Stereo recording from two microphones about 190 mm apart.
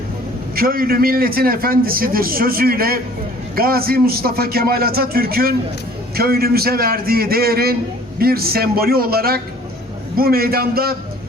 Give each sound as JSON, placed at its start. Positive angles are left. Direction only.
{"t": 0.5, "sound": "a man's voice", "side_deg": -50}